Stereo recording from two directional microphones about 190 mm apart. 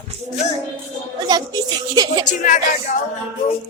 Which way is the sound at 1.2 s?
20° right (ahead or behind).